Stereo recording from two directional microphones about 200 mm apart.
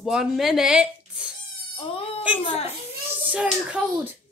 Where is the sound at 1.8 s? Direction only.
30° left (ahead or behind).